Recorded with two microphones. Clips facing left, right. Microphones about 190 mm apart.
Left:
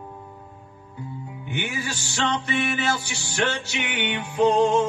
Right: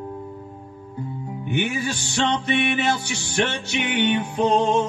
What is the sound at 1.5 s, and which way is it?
Music, 20° right (ahead or behind).